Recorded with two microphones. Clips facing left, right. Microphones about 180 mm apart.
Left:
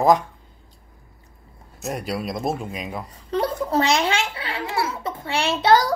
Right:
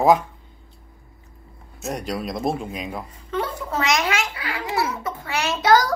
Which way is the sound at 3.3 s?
35° left (ahead or behind).